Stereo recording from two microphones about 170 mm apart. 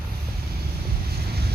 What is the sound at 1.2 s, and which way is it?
Boat, 70° right (ahead or behind).